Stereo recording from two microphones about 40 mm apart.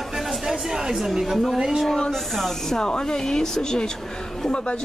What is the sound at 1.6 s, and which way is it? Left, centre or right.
Speech, centre.